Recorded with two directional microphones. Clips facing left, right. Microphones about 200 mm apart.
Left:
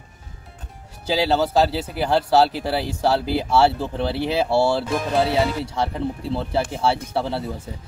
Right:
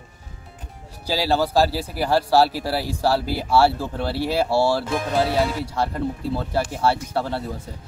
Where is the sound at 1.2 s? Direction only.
5° right (ahead or behind).